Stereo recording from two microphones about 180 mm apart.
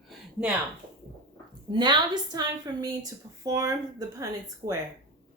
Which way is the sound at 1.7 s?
25° right (ahead or behind).